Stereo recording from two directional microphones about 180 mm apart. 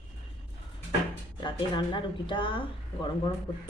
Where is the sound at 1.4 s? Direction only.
25° left (ahead or behind).